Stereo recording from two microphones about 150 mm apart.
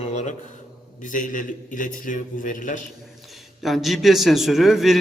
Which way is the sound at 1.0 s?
60° left (ahead or behind).